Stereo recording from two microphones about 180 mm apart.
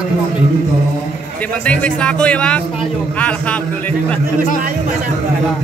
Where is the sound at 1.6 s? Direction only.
5° left (ahead or behind).